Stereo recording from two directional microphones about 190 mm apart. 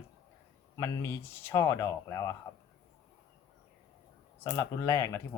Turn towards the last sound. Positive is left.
turn(degrees=15)  # may be behind; listen again after turning